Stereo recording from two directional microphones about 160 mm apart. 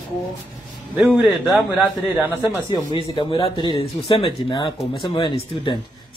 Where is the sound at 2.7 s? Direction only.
30° left (ahead or behind).